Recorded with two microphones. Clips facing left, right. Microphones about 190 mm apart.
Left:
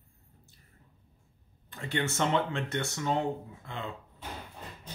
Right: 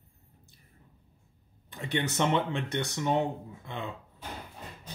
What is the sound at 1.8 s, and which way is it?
Speech, 20° right (ahead or behind).